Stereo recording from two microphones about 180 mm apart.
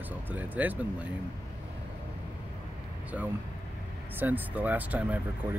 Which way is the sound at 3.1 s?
10° right (ahead or behind).